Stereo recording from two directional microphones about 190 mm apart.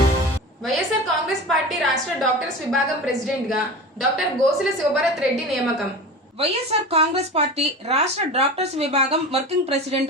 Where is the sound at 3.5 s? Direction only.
Centre (ahead or behind).